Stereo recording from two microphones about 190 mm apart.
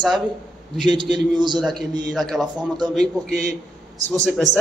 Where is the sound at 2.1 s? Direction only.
Centre (ahead or behind).